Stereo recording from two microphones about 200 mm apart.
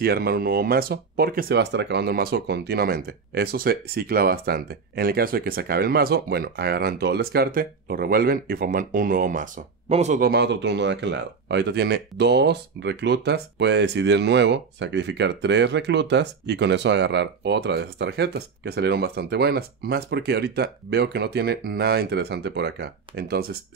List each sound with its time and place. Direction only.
0.0 s speech: 50° right (ahead or behind)
10.3 s speech: 60° right (ahead or behind)